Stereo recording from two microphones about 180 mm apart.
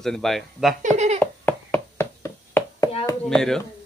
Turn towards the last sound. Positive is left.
turn(degrees=5)  # may be behind; listen again after turning